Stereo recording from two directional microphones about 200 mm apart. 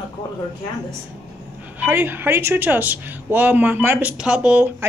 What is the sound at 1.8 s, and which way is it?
A woman's voice, 10° right (ahead or behind).